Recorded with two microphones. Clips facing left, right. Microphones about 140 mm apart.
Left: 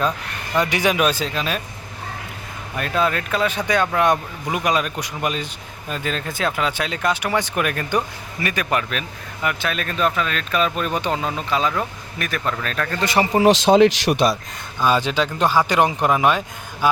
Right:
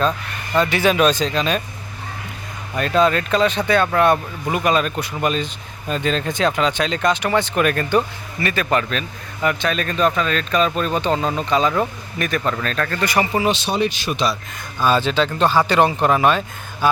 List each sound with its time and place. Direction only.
0.5 s speech: 15° left (ahead or behind)
2.7 s speech: 5° left (ahead or behind)
13.0 s speech: 25° left (ahead or behind)
13.4 s speech: 90° left
14.8 s speech: 15° left (ahead or behind)